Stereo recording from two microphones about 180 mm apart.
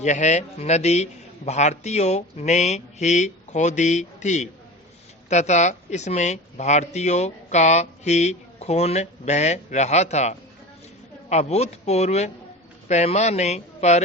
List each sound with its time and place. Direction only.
0.0 s speech: 40° left (ahead or behind)